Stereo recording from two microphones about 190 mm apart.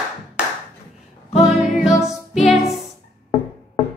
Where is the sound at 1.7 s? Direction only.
40° left (ahead or behind).